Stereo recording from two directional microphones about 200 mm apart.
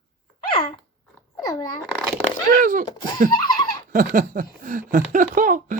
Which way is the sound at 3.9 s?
40° right (ahead or behind).